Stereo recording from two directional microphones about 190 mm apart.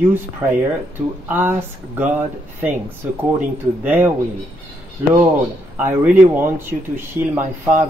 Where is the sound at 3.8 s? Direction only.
10° right (ahead or behind).